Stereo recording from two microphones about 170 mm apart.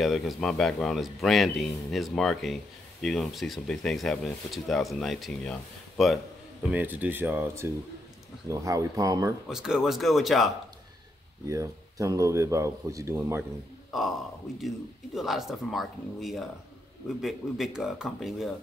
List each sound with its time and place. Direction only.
0.0 s speech: centre (ahead or behind)
6.7 s speech: 10° right (ahead or behind)
9.5 s speech: 5° right (ahead or behind)
11.4 s speech: 20° right (ahead or behind)
15.1 s speech: centre (ahead or behind)